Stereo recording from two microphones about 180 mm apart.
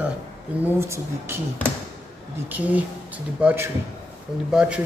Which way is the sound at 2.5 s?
10° right (ahead or behind).